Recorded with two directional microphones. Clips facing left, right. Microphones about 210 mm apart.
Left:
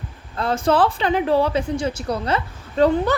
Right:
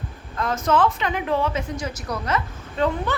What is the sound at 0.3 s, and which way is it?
A woman's voice, 30° left (ahead or behind).